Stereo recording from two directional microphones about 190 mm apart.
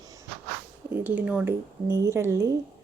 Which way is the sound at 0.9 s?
10° right (ahead or behind).